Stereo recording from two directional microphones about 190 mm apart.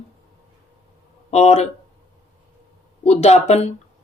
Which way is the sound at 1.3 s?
35° left (ahead or behind).